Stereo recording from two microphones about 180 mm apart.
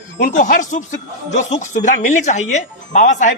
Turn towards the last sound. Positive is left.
turn(degrees=45)  # may be behind; listen again after turning